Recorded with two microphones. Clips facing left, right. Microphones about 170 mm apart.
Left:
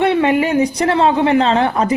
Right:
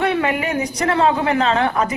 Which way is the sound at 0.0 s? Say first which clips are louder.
Left 5 dB; 30° left (ahead or behind).